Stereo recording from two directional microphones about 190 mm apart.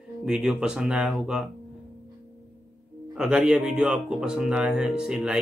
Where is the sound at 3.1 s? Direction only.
5° right (ahead or behind).